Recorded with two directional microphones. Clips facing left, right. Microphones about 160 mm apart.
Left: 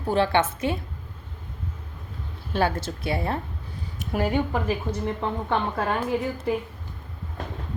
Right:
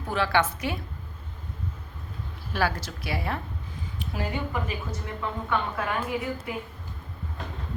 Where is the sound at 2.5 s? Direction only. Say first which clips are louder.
Left 3 dB; 25° left (ahead or behind).